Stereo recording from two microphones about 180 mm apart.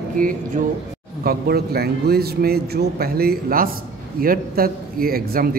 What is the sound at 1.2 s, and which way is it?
A man's voice, 60° right (ahead or behind).